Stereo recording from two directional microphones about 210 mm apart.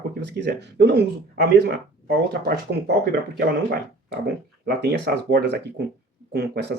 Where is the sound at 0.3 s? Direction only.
55° right (ahead or behind).